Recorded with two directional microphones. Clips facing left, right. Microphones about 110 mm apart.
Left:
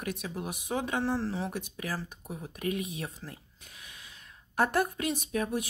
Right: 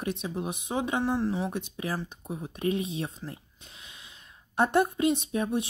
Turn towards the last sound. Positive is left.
turn(degrees=-25)  # may be behind; listen again after turning